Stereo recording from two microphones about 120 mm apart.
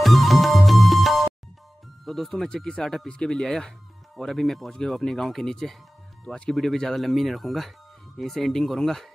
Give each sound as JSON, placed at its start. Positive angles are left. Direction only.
{"t": 0.0, "sound": "music", "side_deg": 0}
{"t": 2.0, "sound": "speech", "side_deg": 0}